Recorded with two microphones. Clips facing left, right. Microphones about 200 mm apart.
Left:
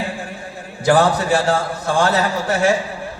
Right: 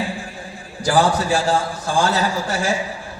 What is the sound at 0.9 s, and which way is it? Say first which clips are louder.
A man's voice: left 3 dB; 60° left (ahead or behind).